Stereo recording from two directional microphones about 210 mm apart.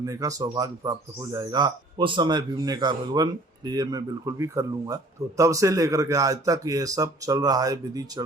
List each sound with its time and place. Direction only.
0.0 s speech: 15° right (ahead or behind)